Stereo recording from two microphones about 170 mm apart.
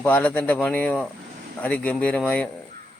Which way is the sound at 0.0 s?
10° left (ahead or behind).